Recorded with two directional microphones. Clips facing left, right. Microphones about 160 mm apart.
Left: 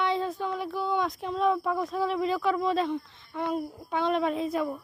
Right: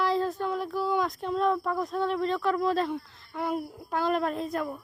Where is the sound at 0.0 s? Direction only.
Centre (ahead or behind).